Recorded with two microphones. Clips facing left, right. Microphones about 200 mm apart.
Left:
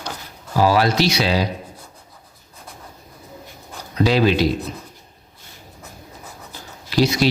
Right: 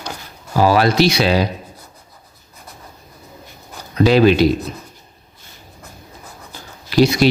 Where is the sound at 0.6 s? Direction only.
55° right (ahead or behind).